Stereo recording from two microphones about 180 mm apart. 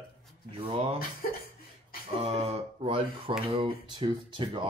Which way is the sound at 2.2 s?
35° right (ahead or behind).